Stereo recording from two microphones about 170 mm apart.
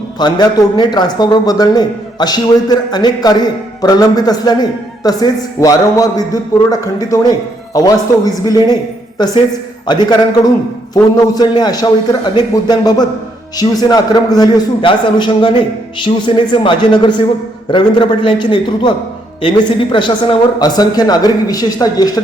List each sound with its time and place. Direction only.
0.2 s a man's voice: 25° left (ahead or behind)